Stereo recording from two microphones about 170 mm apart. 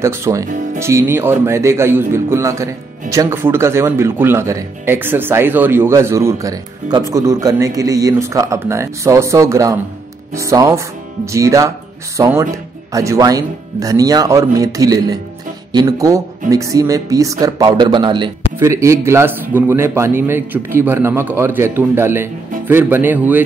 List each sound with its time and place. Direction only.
0.0 s speech: 15° right (ahead or behind)
18.6 s speech: 15° right (ahead or behind)